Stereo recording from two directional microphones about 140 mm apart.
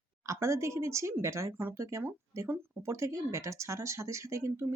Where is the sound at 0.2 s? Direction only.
20° right (ahead or behind).